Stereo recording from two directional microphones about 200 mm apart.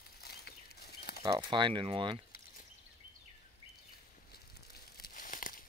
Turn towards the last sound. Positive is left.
turn(degrees=45)  # may be behind; listen again after turning